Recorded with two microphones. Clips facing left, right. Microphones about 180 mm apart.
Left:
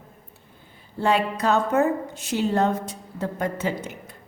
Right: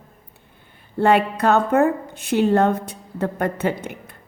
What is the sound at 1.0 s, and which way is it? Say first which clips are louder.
A woman's voice: right 5 dB; 60° right (ahead or behind).